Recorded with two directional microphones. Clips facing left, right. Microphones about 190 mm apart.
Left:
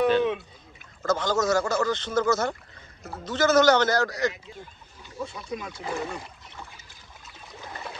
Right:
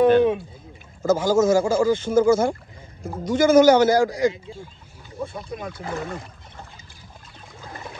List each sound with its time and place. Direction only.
0.0 s a sound: 50° right (ahead or behind)
1.0 s speech: 10° right (ahead or behind)
5.2 s speech: 55° right (ahead or behind)